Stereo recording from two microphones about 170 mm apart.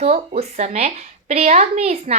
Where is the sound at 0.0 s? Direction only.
40° right (ahead or behind).